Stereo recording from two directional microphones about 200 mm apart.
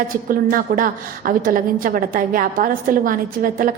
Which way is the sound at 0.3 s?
45° right (ahead or behind).